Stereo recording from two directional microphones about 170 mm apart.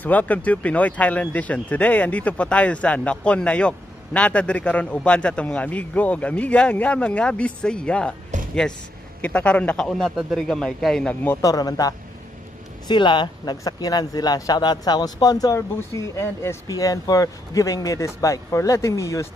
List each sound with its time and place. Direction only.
0.0 s speech: 10° left (ahead or behind)
9.2 s a man's voice: 5° left (ahead or behind)
11.4 s speech: 20° left (ahead or behind)